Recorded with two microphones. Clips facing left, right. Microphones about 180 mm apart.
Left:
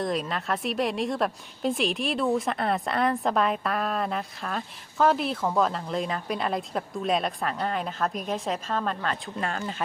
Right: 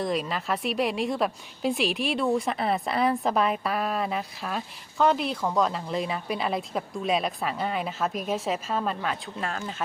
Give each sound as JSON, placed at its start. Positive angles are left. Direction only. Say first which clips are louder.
{"t": 0.0, "sound": "a woman's voice", "louder": "even", "side_deg": 0}